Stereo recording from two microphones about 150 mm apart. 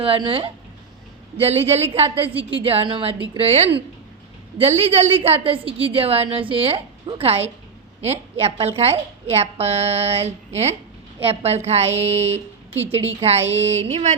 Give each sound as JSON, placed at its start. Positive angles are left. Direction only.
{"t": 0.0, "sound": "a woman's voice", "side_deg": -35}